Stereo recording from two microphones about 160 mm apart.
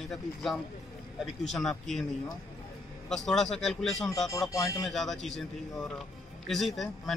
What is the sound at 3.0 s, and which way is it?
Speech, 5° left (ahead or behind).